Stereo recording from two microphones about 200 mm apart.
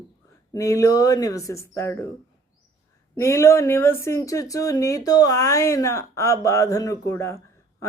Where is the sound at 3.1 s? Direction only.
15° left (ahead or behind).